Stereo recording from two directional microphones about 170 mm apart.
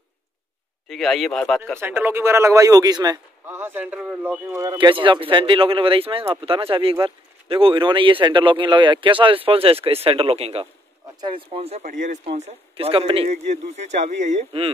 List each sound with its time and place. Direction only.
0.8 s speech: centre (ahead or behind)
1.8 s a man's voice: 15° right (ahead or behind); by 14.7 s 40° right (ahead or behind)